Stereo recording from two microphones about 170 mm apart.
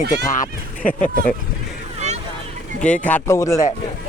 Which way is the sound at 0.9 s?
10° left (ahead or behind).